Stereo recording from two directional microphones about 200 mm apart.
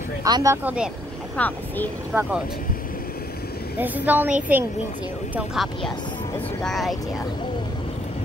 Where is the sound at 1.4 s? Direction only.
10° left (ahead or behind).